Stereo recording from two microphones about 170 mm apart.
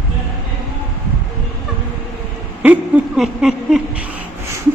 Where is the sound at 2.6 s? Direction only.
5° right (ahead or behind).